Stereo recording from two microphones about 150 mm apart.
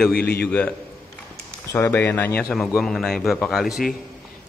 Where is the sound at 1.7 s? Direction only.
15° left (ahead or behind).